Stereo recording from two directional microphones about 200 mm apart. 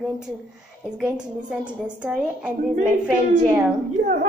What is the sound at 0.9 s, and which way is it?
A woman's voice, 5° right (ahead or behind).